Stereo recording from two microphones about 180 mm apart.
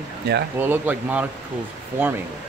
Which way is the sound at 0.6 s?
10° right (ahead or behind).